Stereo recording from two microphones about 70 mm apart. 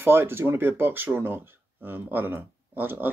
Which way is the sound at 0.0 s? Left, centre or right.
Right.